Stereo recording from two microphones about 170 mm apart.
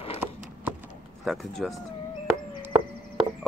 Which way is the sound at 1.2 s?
Centre (ahead or behind).